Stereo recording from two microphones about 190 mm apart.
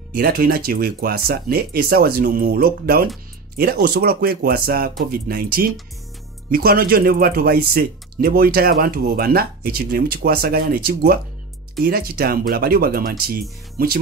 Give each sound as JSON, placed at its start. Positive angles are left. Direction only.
{"t": 0.1, "sound": "speech", "side_deg": -50}